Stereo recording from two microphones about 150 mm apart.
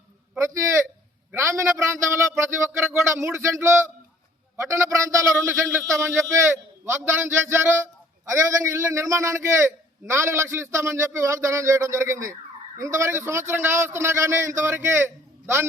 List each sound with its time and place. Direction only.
0.3 s speech: 20° right (ahead or behind)